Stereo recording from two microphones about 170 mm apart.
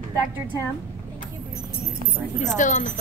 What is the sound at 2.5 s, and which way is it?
Speech, 50° left (ahead or behind).